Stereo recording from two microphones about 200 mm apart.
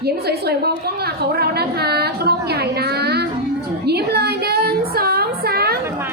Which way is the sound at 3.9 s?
55° right (ahead or behind).